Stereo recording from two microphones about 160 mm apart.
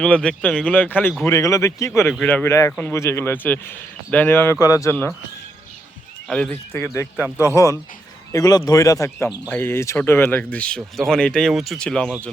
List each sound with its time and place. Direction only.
0.0 s a man's voice: 5° left (ahead or behind)
6.2 s a man's voice: 5° left (ahead or behind)
7.2 s a man's voice: 10° right (ahead or behind)
7.4 s a man's voice: 20° left (ahead or behind)